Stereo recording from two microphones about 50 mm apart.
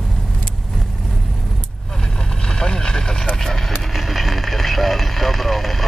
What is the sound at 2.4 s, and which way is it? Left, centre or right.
Vehicle, centre.